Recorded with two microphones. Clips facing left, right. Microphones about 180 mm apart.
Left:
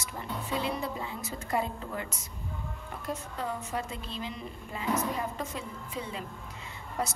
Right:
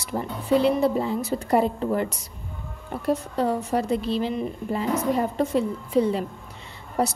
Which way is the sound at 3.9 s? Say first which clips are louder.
Right 16 dB; 80° right.